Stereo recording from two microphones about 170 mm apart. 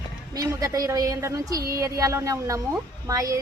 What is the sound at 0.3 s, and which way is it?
Speech, 20° right (ahead or behind).